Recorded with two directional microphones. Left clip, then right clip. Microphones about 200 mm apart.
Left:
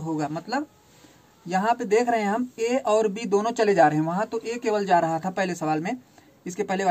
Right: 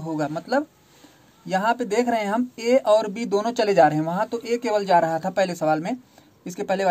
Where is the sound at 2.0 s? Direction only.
40° right (ahead or behind).